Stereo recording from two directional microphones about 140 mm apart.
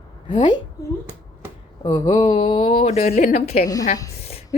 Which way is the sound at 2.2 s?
50° left (ahead or behind).